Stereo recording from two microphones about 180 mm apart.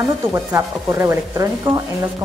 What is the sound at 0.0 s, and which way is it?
Speech, 15° right (ahead or behind).